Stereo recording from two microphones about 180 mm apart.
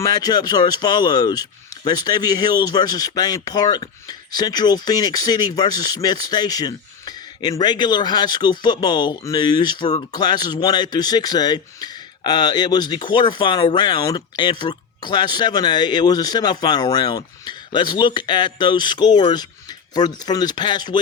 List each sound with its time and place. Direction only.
0.0 s speech: 20° left (ahead or behind)